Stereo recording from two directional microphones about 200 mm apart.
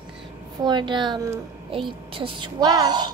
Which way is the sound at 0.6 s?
20° right (ahead or behind).